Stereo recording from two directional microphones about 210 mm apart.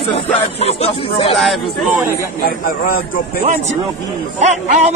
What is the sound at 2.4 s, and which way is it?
Speech, 45° left (ahead or behind).